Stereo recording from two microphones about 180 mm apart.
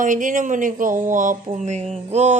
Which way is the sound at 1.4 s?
40° right (ahead or behind).